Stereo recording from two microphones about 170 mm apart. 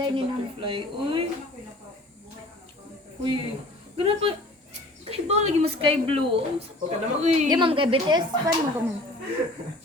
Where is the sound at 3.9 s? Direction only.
35° right (ahead or behind).